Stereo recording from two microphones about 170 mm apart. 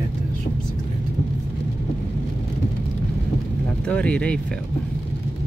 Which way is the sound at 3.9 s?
5° left (ahead or behind).